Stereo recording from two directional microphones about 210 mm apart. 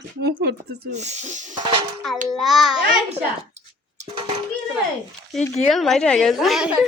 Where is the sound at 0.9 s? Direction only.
35° right (ahead or behind).